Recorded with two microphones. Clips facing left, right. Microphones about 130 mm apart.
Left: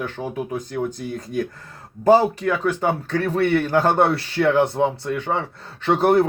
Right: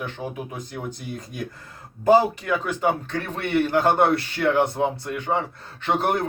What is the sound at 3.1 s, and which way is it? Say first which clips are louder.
Speech: left 8 dB; 35° left (ahead or behind).